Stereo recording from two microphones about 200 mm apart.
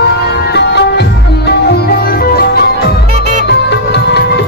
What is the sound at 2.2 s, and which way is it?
Music, 50° left (ahead or behind).